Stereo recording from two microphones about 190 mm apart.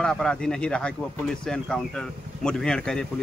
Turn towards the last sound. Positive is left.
turn(degrees=5)  # may be behind; listen again after turning